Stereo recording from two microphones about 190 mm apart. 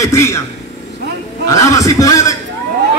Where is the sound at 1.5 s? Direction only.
15° left (ahead or behind).